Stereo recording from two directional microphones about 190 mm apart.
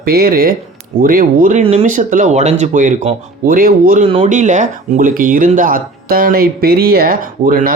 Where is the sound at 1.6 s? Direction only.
30° right (ahead or behind).